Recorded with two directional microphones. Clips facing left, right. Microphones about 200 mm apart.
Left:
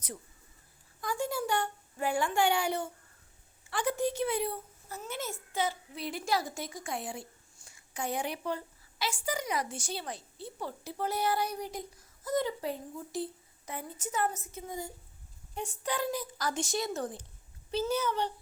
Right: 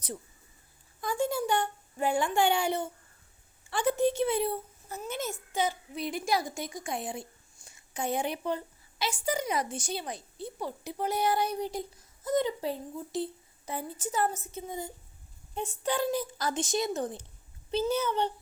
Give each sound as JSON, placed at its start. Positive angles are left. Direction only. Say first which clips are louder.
{"t": 1.0, "sound": "a child's voice", "louder": "right 4 dB", "side_deg": -25}